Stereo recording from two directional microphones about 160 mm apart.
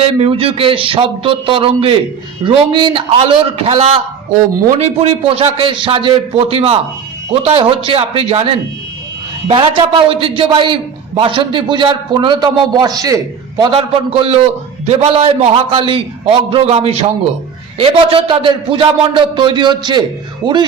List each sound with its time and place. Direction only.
0.0 s a man's voice: 40° right (ahead or behind); by 13.7 s 25° right (ahead or behind)
13.7 s a man's voice: 35° right (ahead or behind)